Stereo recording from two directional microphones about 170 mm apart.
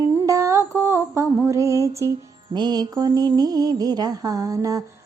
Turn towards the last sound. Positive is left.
turn(degrees=-20)  # may be behind; listen again after turning